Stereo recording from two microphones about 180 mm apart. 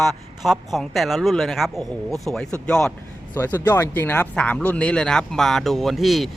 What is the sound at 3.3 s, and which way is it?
Speech, 15° left (ahead or behind).